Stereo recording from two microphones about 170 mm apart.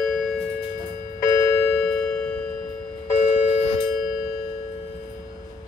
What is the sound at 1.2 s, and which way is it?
Music, 20° left (ahead or behind).